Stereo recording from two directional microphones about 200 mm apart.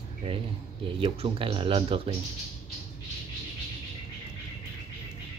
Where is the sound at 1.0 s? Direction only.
25° right (ahead or behind).